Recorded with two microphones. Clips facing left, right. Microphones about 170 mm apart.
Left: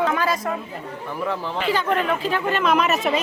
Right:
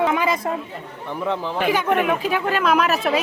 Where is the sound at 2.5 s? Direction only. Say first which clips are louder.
Right 1 dB; centre (ahead or behind).